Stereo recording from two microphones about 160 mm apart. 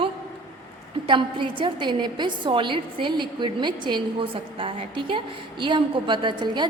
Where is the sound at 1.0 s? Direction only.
30° right (ahead or behind).